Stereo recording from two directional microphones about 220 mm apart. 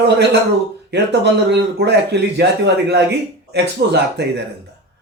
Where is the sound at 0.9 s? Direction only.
50° right (ahead or behind).